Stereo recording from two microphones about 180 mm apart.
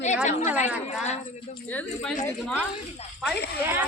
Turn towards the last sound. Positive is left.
turn(degrees=-10)  # may be behind; listen again after turning